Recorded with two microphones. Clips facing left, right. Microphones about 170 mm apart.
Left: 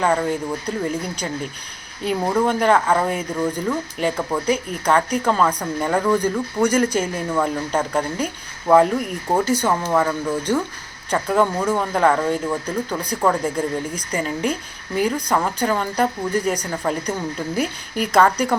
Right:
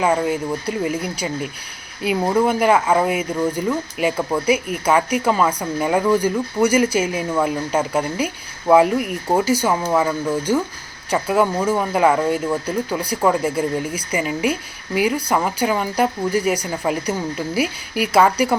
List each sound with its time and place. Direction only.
0.0 s speech: 5° right (ahead or behind)